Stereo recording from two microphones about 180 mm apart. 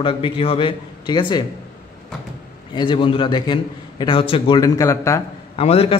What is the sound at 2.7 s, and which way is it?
Speech, 25° left (ahead or behind).